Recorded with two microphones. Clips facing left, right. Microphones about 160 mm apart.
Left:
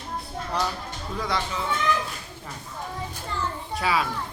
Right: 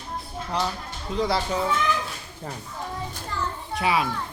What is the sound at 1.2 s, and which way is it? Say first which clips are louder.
Speech: right 5 dB; 35° right (ahead or behind).